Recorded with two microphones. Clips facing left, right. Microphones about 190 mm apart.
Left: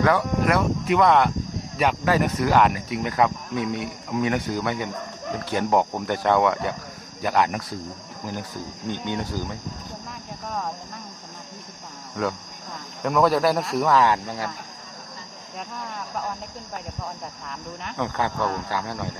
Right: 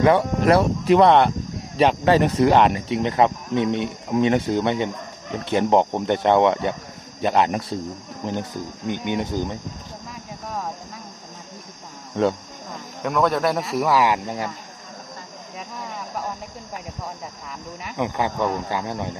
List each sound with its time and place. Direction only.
0.0 s speech: 25° right (ahead or behind)
8.8 s speech: 15° right (ahead or behind)
12.2 s speech: 25° right (ahead or behind)
13.0 s speech: centre (ahead or behind); by 14.5 s 15° right (ahead or behind)
17.8 s speech: 15° right (ahead or behind)